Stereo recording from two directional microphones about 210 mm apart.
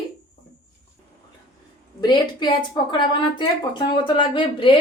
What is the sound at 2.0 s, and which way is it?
Speech, 20° left (ahead or behind).